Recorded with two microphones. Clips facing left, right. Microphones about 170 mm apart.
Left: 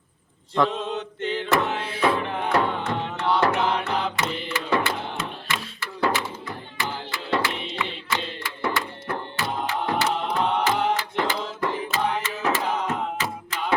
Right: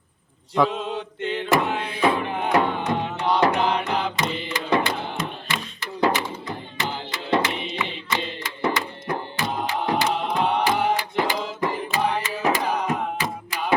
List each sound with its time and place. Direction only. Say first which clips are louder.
0.5 s mantra: right 1 dB; 5° right (ahead or behind)
1.5 s music: right 3 dB; 10° right (ahead or behind)
5.8 s a sound: right 3 dB; 15° right (ahead or behind)
6.7 s music: even; 20° right (ahead or behind)
13.5 s thunk: right 2 dB; 10° right (ahead or behind)